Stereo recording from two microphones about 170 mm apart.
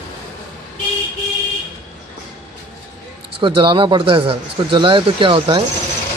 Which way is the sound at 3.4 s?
30° right (ahead or behind).